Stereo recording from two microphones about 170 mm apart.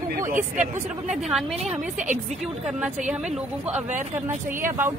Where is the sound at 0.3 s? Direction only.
50° right (ahead or behind).